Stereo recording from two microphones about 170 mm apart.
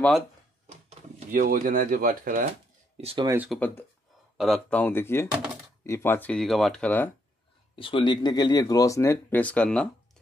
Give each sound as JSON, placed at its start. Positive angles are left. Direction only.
{"t": 0.7, "sound": "speech", "side_deg": -45}
{"t": 3.0, "sound": "speech", "side_deg": -35}
{"t": 3.4, "sound": "speech", "side_deg": 10}
{"t": 7.7, "sound": "speech", "side_deg": 30}